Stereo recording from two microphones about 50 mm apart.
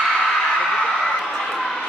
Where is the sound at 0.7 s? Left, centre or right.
Centre.